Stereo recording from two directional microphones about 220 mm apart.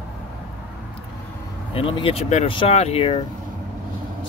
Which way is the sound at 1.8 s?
25° left (ahead or behind).